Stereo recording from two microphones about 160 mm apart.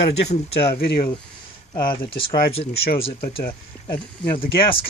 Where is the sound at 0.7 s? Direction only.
70° left (ahead or behind).